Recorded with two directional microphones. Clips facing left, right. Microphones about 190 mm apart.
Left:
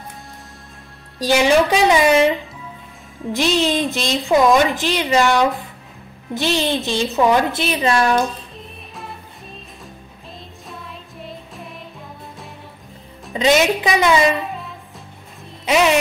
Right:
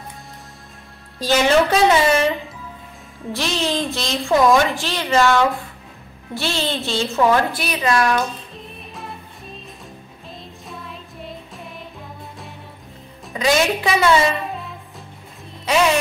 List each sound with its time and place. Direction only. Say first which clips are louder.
1.2 s a woman's voice: left 1 dB; 15° left (ahead or behind)
3.3 s a woman's voice: left 4 dB; 15° left (ahead or behind)
8.5 s music: right 1 dB; centre (ahead or behind)
10.7 s music: even; centre (ahead or behind)
13.3 s a woman's voice: left 3 dB; 20° left (ahead or behind)
15.6 s speech: left 2 dB; 20° left (ahead or behind)